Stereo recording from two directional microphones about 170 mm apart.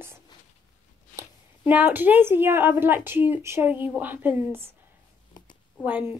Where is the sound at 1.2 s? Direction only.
10° right (ahead or behind).